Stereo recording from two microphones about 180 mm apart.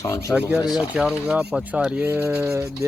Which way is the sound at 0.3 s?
5° right (ahead or behind).